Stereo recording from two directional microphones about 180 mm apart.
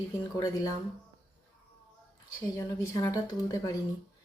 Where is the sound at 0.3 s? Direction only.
20° left (ahead or behind).